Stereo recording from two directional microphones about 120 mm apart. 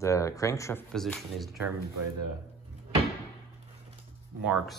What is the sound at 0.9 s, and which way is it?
Speech, 5° left (ahead or behind).